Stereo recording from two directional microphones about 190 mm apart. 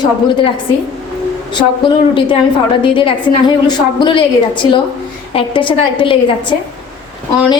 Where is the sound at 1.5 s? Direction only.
25° left (ahead or behind).